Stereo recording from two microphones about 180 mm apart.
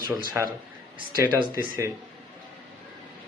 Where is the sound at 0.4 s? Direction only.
15° right (ahead or behind).